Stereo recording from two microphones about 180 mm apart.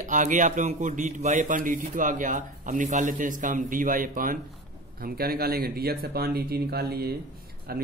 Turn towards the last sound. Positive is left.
turn(degrees=-60)  # may be behind; listen again after turning